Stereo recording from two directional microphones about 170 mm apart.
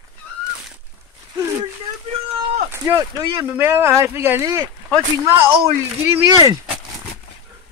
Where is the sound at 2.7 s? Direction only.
15° right (ahead or behind).